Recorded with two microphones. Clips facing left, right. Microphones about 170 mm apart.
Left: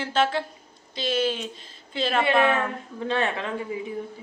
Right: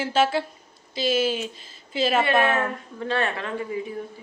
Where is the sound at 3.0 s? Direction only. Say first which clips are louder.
Even; 20° left (ahead or behind).